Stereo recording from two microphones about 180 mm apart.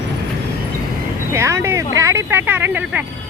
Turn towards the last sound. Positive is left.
turn(degrees=-10)  # may be behind; listen again after turning